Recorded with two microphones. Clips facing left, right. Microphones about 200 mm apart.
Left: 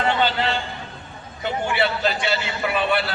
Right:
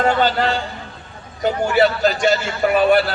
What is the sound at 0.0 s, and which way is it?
A man's voice, 45° right (ahead or behind).